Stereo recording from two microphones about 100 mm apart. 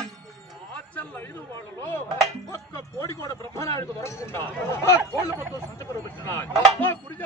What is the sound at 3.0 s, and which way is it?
A man's voice, 30° left (ahead or behind).